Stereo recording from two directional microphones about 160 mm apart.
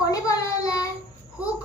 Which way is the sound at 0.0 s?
20° left (ahead or behind).